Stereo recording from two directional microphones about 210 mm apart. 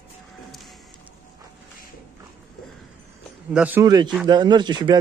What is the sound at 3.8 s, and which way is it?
Speech, 20° right (ahead or behind).